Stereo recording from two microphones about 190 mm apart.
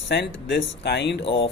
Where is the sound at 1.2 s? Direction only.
30° left (ahead or behind).